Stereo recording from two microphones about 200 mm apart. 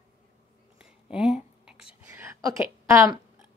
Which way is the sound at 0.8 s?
5° right (ahead or behind).